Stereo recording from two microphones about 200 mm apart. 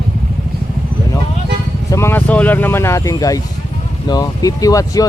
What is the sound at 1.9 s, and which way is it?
Speech, 15° left (ahead or behind).